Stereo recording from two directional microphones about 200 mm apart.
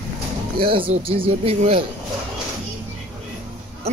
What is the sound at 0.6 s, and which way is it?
Speech, 25° right (ahead or behind).